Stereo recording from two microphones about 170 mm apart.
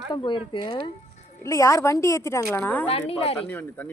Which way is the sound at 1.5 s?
20° left (ahead or behind).